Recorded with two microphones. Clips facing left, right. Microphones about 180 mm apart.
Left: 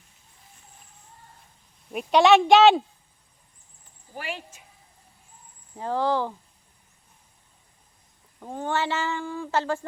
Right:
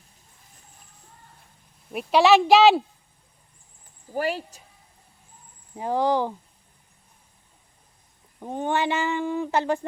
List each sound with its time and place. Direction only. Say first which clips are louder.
1.9 s speech: even; centre (ahead or behind)
4.1 s a woman's voice: right 9 dB; 40° right (ahead or behind)
5.7 s speech: right 2 dB; 15° right (ahead or behind)
8.4 s speech: right 3 dB; 20° right (ahead or behind)